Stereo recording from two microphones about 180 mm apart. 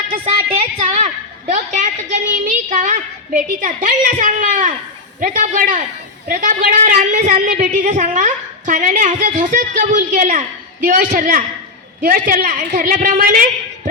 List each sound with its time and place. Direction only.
0.8 s a woman's voice: 40° right (ahead or behind)